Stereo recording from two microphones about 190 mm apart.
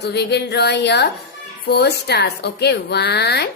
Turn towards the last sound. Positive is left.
turn(degrees=60)  # may be behind; listen again after turning